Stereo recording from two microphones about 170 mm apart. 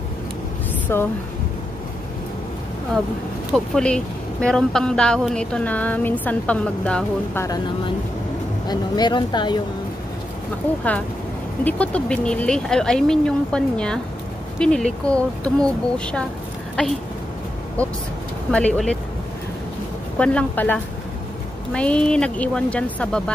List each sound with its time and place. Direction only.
0.9 s speech: 15° left (ahead or behind)
3.5 s speech: 5° left (ahead or behind)
7.4 s speech: 25° left (ahead or behind)
11.6 s speech: 5° left (ahead or behind)
18.5 s speech: 5° left (ahead or behind)
20.2 s speech: 10° left (ahead or behind)